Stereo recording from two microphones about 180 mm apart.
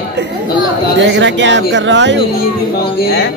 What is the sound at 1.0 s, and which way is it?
Speech, 80° right.